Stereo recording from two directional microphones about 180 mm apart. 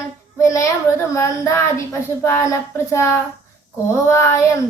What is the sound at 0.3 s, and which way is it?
A child's voice, 15° left (ahead or behind).